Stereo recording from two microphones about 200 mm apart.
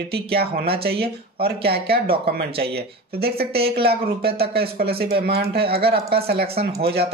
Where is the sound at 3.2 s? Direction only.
50° right (ahead or behind).